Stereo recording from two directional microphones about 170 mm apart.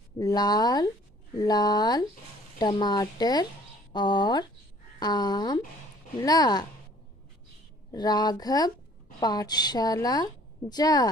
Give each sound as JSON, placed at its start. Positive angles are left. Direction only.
{"t": 0.2, "sound": "a woman's voice", "side_deg": 20}
{"t": 7.9, "sound": "a woman's voice", "side_deg": 25}